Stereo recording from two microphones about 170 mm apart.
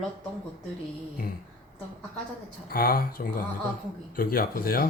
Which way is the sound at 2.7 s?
60° left (ahead or behind).